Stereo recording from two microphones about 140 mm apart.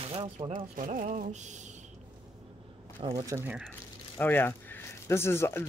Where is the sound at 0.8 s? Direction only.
70° right (ahead or behind).